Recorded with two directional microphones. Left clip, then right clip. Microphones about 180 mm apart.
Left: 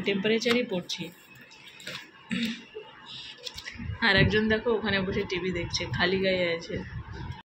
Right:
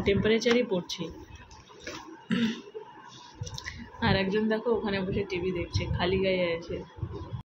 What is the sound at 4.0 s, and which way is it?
Speech, 5° right (ahead or behind).